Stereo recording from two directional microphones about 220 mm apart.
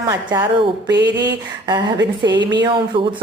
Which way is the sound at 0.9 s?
50° right (ahead or behind).